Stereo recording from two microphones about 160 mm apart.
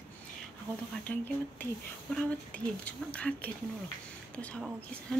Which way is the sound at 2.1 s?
10° left (ahead or behind).